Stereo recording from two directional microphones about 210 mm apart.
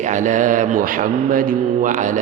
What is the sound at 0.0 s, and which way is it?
Speech, 35° right (ahead or behind).